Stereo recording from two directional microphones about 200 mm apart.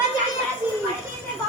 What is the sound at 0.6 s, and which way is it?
Children playing, 10° right (ahead or behind).